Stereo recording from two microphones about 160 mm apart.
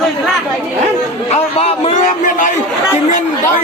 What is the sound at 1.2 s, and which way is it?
A man's voice, 40° left (ahead or behind).